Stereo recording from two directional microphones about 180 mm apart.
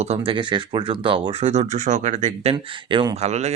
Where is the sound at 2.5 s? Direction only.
25° right (ahead or behind).